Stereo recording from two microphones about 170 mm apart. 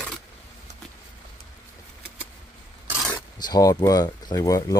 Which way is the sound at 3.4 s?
20° left (ahead or behind).